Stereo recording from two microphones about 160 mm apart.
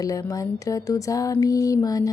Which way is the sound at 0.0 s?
20° left (ahead or behind).